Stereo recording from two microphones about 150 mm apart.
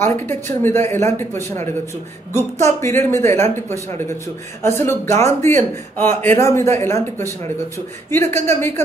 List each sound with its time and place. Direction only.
0.0 s speech: 15° left (ahead or behind)
4.6 s speech: 15° left (ahead or behind)